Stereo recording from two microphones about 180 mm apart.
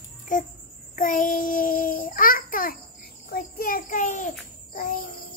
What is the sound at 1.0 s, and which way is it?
Child singing, 50° left (ahead or behind).